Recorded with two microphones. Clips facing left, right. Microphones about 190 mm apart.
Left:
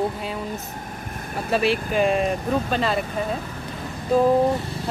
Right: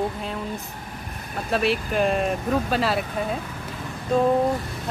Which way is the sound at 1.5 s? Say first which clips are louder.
Left 2 dB; centre (ahead or behind).